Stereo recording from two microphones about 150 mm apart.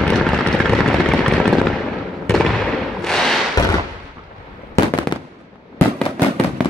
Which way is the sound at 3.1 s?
5° left (ahead or behind).